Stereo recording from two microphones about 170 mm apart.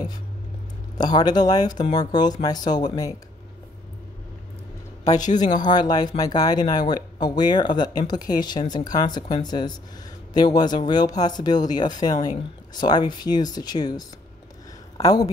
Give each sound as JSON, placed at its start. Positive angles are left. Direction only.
{"t": 0.9, "sound": "speech", "side_deg": 25}
{"t": 5.6, "sound": "speech", "side_deg": 25}